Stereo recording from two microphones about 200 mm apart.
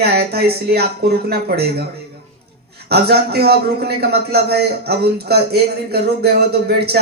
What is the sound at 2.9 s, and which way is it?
A man's voice, 55° right (ahead or behind).